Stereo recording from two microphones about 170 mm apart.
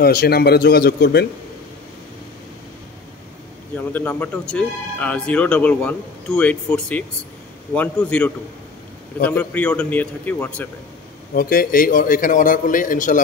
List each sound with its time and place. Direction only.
0.0 s speech: 65° left (ahead or behind)
3.9 s speech: 10° left (ahead or behind)
11.3 s a man's voice: 60° left (ahead or behind)